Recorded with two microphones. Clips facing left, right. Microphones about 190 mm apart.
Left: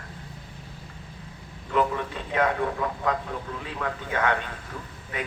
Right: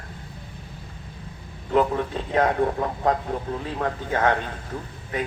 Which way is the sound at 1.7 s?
35° right (ahead or behind).